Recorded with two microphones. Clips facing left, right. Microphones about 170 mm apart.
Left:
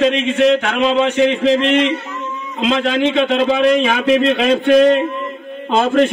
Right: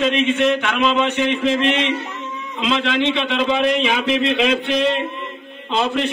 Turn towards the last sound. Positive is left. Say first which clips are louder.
# left 7 dB
turn(degrees=45)  # may be behind; listen again after turning